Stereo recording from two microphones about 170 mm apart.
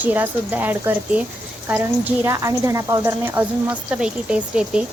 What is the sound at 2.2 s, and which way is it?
Speech, 15° right (ahead or behind).